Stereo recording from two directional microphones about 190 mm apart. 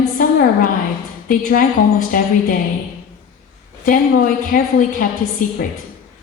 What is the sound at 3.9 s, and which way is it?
A woman's voice, 45° left (ahead or behind).